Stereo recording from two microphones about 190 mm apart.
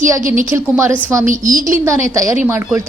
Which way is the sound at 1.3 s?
45° right (ahead or behind).